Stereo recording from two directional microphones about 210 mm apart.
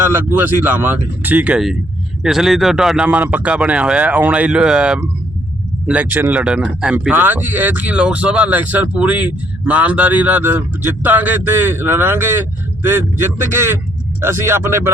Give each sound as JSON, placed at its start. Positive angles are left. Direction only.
{"t": 0.3, "sound": "speech", "side_deg": -10}